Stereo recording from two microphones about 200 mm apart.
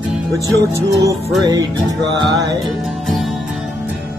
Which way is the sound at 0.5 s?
15° right (ahead or behind).